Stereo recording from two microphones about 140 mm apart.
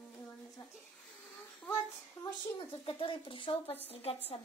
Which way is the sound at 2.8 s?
35° left (ahead or behind).